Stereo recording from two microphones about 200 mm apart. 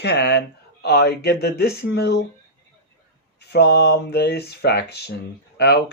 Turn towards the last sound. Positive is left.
turn(degrees=55)  # may be behind; listen again after turning